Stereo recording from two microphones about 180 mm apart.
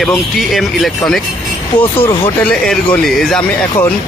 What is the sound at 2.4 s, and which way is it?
Speech, 5° left (ahead or behind).